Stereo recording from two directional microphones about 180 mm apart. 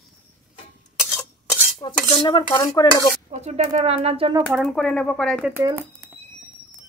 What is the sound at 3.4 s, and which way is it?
Speech, 35° right (ahead or behind).